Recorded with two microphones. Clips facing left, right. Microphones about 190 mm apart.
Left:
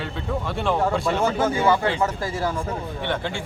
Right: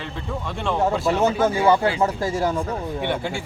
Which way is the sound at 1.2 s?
20° right (ahead or behind).